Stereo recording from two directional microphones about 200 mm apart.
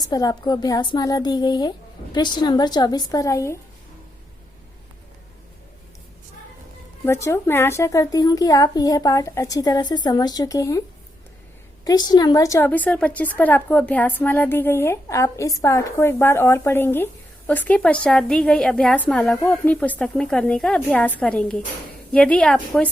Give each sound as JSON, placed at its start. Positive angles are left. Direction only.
{"t": 0.0, "sound": "a woman's voice", "side_deg": 20}
{"t": 7.0, "sound": "a woman's voice", "side_deg": 15}
{"t": 11.9, "sound": "a woman's voice", "side_deg": 20}